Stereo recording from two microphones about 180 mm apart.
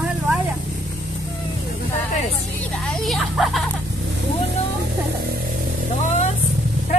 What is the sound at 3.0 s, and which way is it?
Speech, centre (ahead or behind).